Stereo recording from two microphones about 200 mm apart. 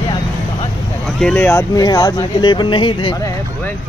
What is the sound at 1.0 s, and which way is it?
Speech, 5° left (ahead or behind).